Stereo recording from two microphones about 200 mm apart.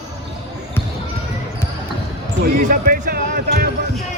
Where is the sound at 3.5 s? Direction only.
55° right (ahead or behind).